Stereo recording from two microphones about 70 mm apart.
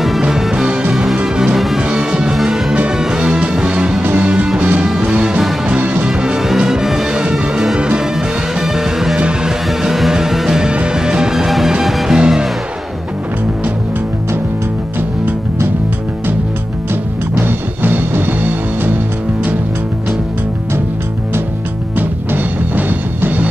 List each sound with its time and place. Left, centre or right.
0.0 s music: centre
4.0 s music: right
4.8 s music: centre
5.1 s music: centre
6.0 s music: centre
17.4 s music: right
21.9 s music: right